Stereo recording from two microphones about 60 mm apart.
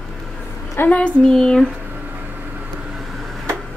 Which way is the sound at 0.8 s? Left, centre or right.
Left.